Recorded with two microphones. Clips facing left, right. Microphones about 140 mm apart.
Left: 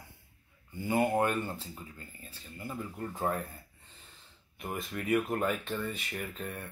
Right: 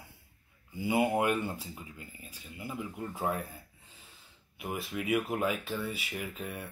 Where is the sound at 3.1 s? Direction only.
5° right (ahead or behind).